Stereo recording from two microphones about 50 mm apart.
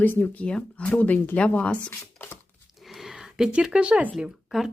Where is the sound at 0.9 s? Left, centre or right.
Left.